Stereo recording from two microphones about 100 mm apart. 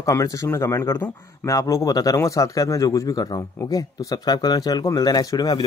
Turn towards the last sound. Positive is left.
turn(degrees=40)  # may be behind; listen again after turning